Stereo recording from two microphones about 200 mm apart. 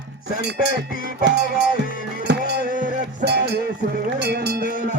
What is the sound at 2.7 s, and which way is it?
Music, 40° right (ahead or behind).